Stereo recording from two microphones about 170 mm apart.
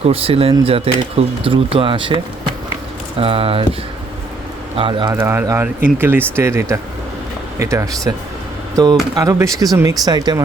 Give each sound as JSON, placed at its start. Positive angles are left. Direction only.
{"t": 0.0, "sound": "speech", "side_deg": -35}
{"t": 4.8, "sound": "speech", "side_deg": -30}
{"t": 5.1, "sound": "speech", "side_deg": -15}